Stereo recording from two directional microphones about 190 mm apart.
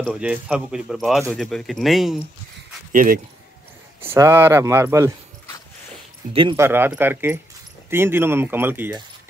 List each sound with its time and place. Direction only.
0.0 s speech: 5° right (ahead or behind)
2.9 s speech: 45° right (ahead or behind)
4.0 s speech: 10° right (ahead or behind)
6.5 s speech: 10° right (ahead or behind)